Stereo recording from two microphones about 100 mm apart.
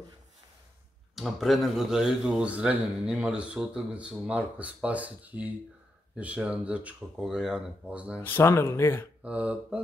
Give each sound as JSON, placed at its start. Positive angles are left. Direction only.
{"t": 1.1, "sound": "speech", "side_deg": 0}
{"t": 8.2, "sound": "speech", "side_deg": 20}
{"t": 9.2, "sound": "speech", "side_deg": -10}